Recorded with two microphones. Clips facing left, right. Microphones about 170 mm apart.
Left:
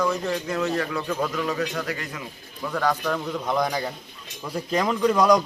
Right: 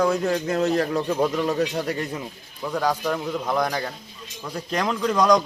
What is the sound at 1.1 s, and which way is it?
A man's voice, 30° right (ahead or behind).